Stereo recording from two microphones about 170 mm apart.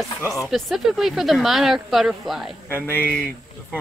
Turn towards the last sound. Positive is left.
turn(degrees=10)  # may be behind; listen again after turning